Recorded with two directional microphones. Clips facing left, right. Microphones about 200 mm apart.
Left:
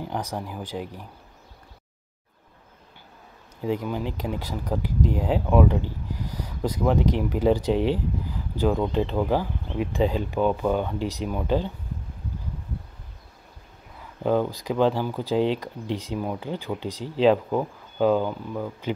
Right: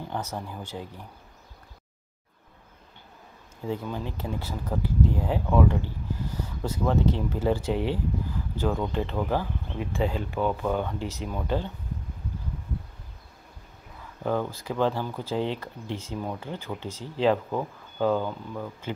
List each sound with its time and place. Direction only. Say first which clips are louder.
0.0 s speech: left 3 dB; 15° left (ahead or behind)
3.6 s speech: left 5 dB; 15° left (ahead or behind)
14.2 s speech: left 5 dB; 15° left (ahead or behind)